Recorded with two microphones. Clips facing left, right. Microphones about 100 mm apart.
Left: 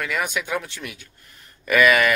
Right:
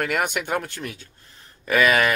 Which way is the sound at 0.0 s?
55° right (ahead or behind).